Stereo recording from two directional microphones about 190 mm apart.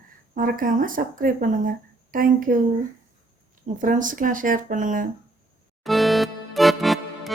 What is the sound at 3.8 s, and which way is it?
Speech, 45° right (ahead or behind).